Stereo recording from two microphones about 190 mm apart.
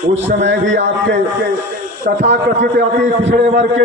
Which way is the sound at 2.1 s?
60° right (ahead or behind).